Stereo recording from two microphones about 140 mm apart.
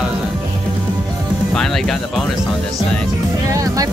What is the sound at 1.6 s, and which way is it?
Music, centre (ahead or behind).